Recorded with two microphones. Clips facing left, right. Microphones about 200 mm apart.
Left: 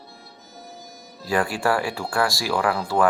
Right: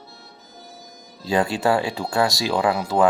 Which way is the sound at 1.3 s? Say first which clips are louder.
Right 2 dB; 20° right (ahead or behind).